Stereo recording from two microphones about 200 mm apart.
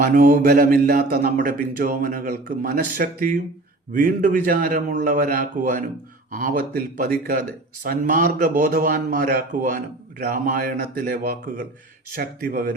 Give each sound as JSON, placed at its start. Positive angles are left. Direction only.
{"t": 0.0, "sound": "a man's voice", "side_deg": -45}